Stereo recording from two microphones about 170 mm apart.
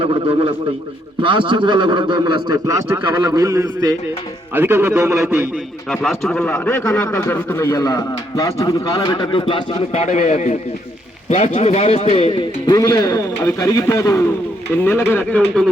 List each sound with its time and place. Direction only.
0.0 s a man's voice: 30° right (ahead or behind); by 5.5 s 10° right (ahead or behind)
5.9 s a man's voice: centre (ahead or behind); by 12.4 s 35° left (ahead or behind)
12.6 s a man's voice: 20° left (ahead or behind)